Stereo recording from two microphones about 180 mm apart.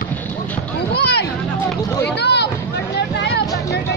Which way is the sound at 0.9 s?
65° left (ahead or behind).